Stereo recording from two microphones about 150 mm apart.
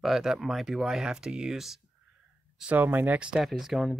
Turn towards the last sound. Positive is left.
turn(degrees=0)  # may be behind; listen again after turning